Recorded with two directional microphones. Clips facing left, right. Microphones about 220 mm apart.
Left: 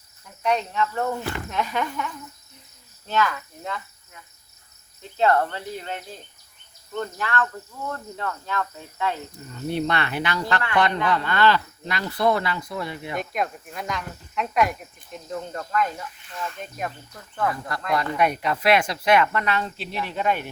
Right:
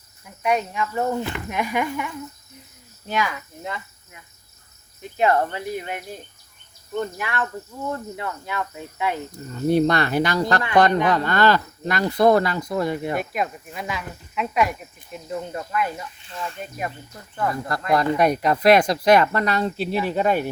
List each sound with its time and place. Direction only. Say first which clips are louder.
0.4 s speech: right 1 dB; 10° right (ahead or behind)
9.5 s speech: right 7 dB; 40° right (ahead or behind)
13.1 s speech: right 2 dB; 5° right (ahead or behind)
17.9 s speech: right 4 dB; 40° right (ahead or behind)